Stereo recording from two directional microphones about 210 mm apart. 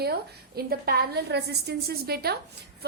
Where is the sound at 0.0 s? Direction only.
50° right (ahead or behind).